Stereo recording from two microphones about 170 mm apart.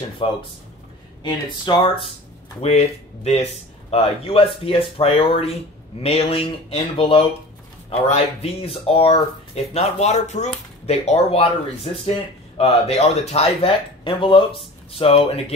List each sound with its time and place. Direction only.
0.2 s speech: 30° left (ahead or behind)
3.9 s speech: 35° left (ahead or behind)